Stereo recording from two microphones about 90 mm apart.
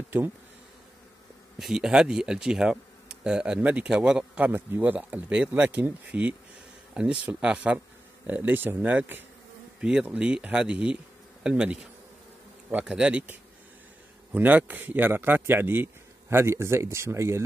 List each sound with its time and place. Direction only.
1.6 s a man's voice: 5° right (ahead or behind)
9.8 s a man's voice: 10° right (ahead or behind); by 17.4 s 30° right (ahead or behind)